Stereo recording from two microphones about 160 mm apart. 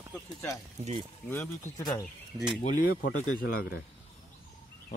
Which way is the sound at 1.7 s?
25° left (ahead or behind).